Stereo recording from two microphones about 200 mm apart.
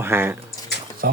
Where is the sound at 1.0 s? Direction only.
50° right (ahead or behind).